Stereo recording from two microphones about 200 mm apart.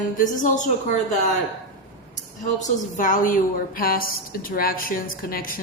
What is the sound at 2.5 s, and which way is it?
A woman's voice, 40° left (ahead or behind).